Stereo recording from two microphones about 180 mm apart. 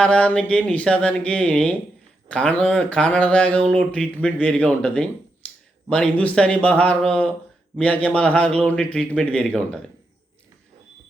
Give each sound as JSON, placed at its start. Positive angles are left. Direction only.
{"t": 0.0, "sound": "a man's voice", "side_deg": 5}